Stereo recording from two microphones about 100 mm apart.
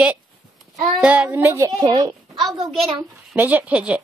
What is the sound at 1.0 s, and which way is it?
Speech, 15° right (ahead or behind).